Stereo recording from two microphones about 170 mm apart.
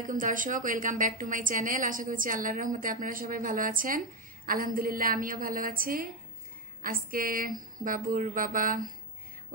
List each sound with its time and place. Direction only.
0.0 s a woman's voice: 50° right (ahead or behind)